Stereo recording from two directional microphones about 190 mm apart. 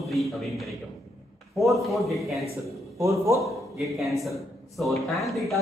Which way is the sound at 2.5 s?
15° right (ahead or behind).